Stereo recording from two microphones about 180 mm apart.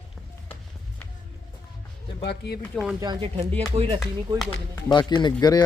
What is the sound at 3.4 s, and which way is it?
Speech, 35° right (ahead or behind).